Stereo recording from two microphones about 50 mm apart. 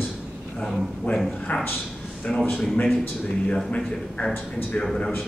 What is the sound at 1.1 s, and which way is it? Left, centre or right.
Speech, left.